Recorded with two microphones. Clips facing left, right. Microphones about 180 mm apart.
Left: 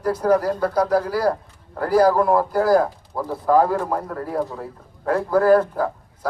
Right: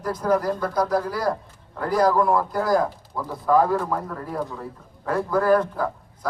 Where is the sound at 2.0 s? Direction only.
40° left (ahead or behind).